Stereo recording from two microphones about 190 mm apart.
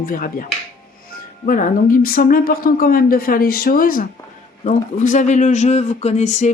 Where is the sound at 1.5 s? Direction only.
45° left (ahead or behind).